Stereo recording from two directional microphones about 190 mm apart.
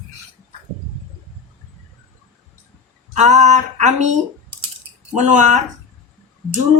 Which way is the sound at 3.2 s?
40° right (ahead or behind).